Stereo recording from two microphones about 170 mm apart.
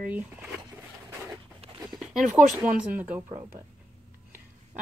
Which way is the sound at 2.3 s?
10° right (ahead or behind).